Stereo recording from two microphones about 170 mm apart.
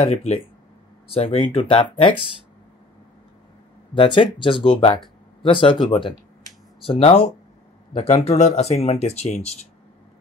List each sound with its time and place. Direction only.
0.0 s speech: 40° left (ahead or behind)
3.9 s speech: 30° left (ahead or behind)